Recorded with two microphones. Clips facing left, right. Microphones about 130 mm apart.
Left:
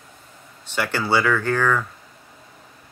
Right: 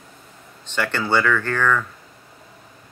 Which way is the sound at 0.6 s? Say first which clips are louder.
Even; 10° left (ahead or behind).